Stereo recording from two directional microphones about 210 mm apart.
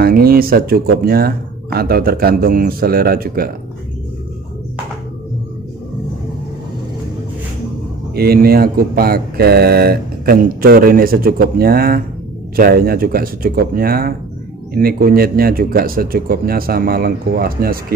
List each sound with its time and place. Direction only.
0.0 s speech: 45° right (ahead or behind)
8.1 s speech: 50° right (ahead or behind)